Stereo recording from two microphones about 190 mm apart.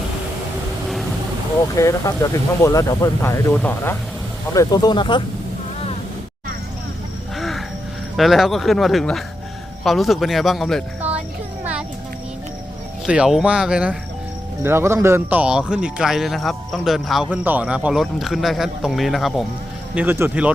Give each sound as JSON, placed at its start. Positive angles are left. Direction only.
{"t": 1.7, "sound": "speech", "side_deg": 15}
{"t": 4.5, "sound": "speech", "side_deg": 20}
{"t": 7.3, "sound": "music", "side_deg": 0}
{"t": 8.1, "sound": "speech", "side_deg": 0}
{"t": 13.1, "sound": "speech", "side_deg": -5}